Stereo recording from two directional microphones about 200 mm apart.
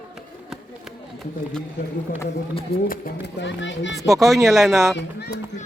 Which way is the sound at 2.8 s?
45° left (ahead or behind).